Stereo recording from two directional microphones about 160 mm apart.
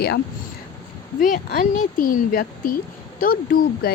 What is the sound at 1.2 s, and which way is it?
A woman's voice, 60° left (ahead or behind).